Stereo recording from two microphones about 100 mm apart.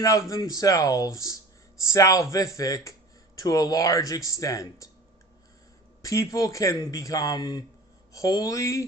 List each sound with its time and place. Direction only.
0.0 s a man's voice: 35° left (ahead or behind)
6.0 s a man's voice: 35° left (ahead or behind)